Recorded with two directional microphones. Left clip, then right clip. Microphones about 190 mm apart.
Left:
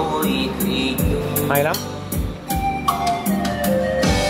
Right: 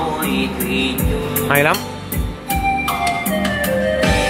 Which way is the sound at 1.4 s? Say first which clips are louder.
Right 5 dB; 15° right (ahead or behind).